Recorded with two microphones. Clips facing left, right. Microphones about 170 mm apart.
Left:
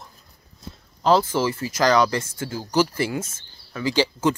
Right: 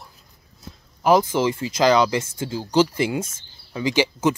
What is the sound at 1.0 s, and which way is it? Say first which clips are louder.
Speech: right 2 dB; 15° right (ahead or behind).